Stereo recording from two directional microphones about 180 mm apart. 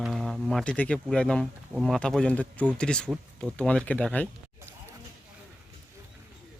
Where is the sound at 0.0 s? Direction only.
Centre (ahead or behind).